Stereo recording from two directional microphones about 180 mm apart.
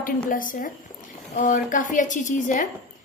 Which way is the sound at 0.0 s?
50° left (ahead or behind).